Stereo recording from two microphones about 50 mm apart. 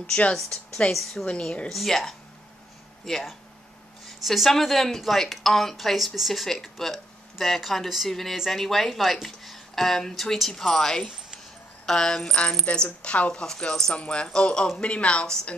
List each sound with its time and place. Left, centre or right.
0.0 s a woman's voice: centre
1.7 s a woman's voice: centre; by 15.2 s left